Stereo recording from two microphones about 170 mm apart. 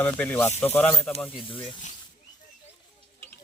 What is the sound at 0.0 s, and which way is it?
Speech, 10° left (ahead or behind).